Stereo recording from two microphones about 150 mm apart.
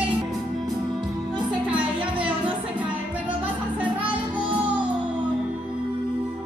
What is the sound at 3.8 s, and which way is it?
Music, 10° right (ahead or behind).